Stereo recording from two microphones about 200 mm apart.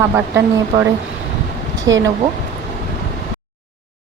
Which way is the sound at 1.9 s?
15° right (ahead or behind).